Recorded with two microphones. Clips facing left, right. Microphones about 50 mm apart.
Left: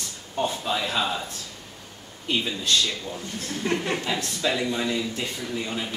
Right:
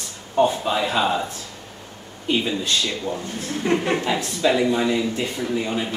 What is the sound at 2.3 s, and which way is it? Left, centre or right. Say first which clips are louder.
Speech: right 3 dB; centre.